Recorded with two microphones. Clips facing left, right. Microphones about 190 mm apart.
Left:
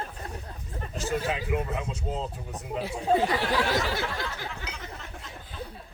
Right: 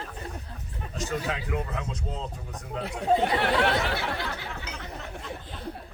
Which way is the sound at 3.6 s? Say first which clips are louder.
Right 1 dB; 65° right (ahead or behind).